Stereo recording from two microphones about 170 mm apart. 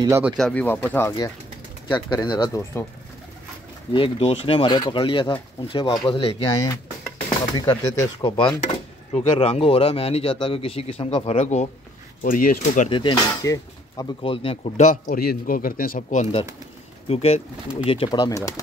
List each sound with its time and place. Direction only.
0.4 s speech: 5° left (ahead or behind)
2.0 s speech: 25° left (ahead or behind)
3.9 s speech: 35° left (ahead or behind)
12.2 s speech: 55° left (ahead or behind)
12.9 s speech: 25° left (ahead or behind)
14.2 s speech: 35° left (ahead or behind)
14.9 s speech: 60° left (ahead or behind); by 18.5 s 20° left (ahead or behind)